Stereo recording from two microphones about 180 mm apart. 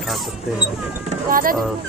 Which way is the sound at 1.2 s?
50° right (ahead or behind).